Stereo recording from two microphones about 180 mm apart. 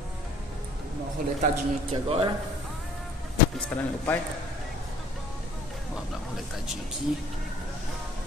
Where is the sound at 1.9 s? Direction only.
30° right (ahead or behind).